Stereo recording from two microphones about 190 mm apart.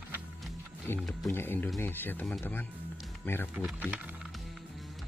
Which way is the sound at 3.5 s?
5° right (ahead or behind).